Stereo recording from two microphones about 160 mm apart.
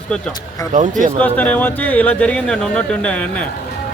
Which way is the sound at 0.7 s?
55° right (ahead or behind).